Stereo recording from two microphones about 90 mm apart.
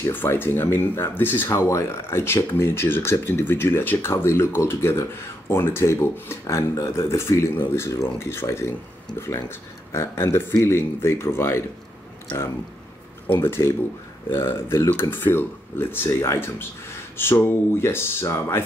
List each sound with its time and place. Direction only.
0.0 s speech: 25° left (ahead or behind)
1.5 s speech: 30° left (ahead or behind)
9.9 s speech: 30° left (ahead or behind)
13.3 s speech: 25° left (ahead or behind)